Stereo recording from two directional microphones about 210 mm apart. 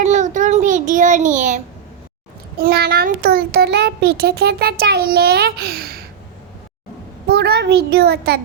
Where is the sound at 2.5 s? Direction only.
50° right (ahead or behind).